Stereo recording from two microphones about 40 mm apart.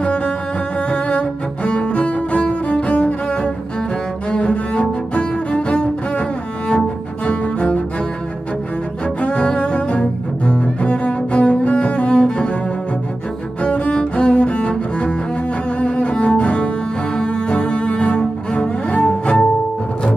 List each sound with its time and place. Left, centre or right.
0.0 s music: left
4.3 s cello: left
7.2 s cello: left
9.2 s cello: left
13.6 s cello: left